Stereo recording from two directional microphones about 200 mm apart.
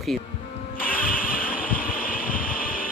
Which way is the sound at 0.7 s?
45° left (ahead or behind).